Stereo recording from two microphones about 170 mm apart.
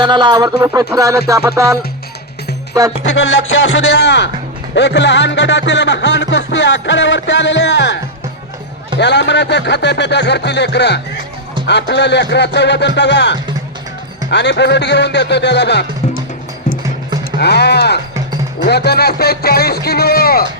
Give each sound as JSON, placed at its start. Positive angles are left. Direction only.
{"t": 0.0, "sound": "music", "side_deg": -25}
{"t": 3.0, "sound": "speech", "side_deg": 90}
{"t": 9.0, "sound": "speech", "side_deg": 90}
{"t": 17.4, "sound": "speech", "side_deg": 75}